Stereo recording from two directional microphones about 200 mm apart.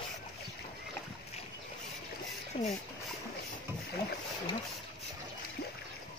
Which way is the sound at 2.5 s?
30° left (ahead or behind).